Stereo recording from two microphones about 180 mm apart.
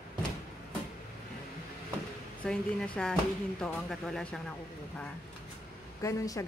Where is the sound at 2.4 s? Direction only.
5° left (ahead or behind).